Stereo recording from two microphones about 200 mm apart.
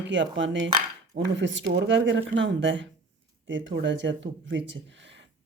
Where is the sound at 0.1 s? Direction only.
65° right (ahead or behind).